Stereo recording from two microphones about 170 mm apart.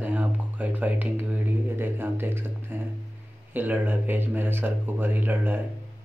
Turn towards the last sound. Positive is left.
turn(degrees=-10)  # may be behind; listen again after turning